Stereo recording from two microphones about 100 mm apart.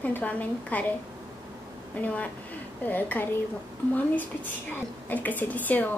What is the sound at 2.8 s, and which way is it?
Speech, 20° left (ahead or behind).